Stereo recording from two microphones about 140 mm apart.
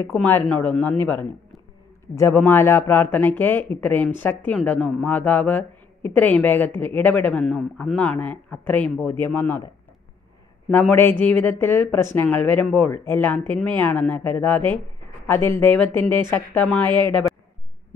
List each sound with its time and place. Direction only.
0.2 s speech: 10° left (ahead or behind)
2.1 s speech: 15° left (ahead or behind)
10.7 s speech: 10° left (ahead or behind)